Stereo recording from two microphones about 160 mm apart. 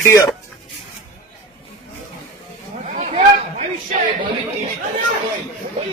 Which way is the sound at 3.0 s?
45° right (ahead or behind).